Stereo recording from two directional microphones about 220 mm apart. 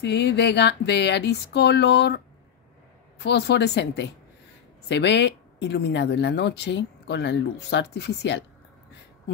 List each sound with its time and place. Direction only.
0.0 s speech: 50° left (ahead or behind)